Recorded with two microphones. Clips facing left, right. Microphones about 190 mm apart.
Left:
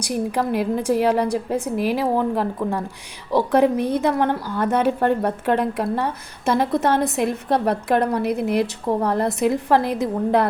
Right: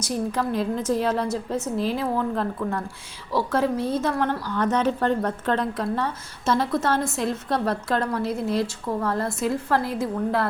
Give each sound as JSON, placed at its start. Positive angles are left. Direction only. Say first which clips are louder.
{"t": 0.0, "sound": "a woman's voice", "louder": "left 3 dB", "side_deg": 15}